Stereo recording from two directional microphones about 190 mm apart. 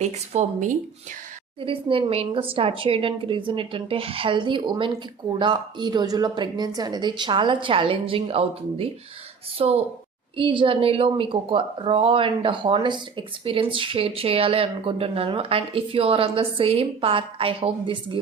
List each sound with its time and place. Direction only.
0.0 s speech: 35° right (ahead or behind)
1.6 s speech: 30° right (ahead or behind)